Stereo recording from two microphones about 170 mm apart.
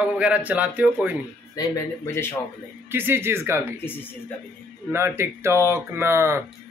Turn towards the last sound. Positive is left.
turn(degrees=-15)  # may be behind; listen again after turning